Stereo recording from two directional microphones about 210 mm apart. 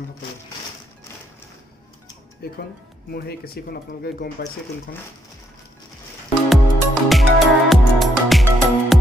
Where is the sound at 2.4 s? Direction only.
45° left (ahead or behind).